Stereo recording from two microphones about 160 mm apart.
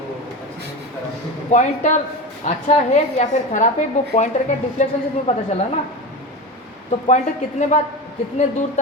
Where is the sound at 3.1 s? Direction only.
50° left (ahead or behind).